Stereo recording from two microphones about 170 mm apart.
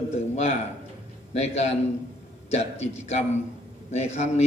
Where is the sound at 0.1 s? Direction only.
40° left (ahead or behind).